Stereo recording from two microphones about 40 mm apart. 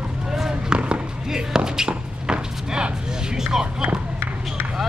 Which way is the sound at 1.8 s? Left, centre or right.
Right.